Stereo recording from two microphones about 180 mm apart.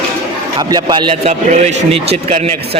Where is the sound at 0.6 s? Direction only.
20° right (ahead or behind).